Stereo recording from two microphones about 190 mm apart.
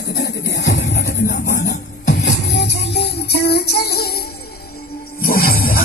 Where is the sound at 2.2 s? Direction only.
65° left (ahead or behind).